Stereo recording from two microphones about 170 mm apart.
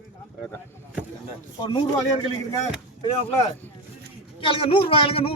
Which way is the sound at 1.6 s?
25° left (ahead or behind).